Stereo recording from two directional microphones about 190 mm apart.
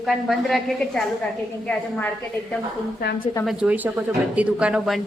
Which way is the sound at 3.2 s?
20° left (ahead or behind).